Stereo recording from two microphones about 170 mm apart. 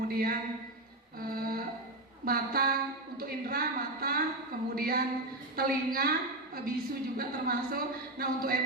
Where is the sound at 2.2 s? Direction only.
60° right (ahead or behind).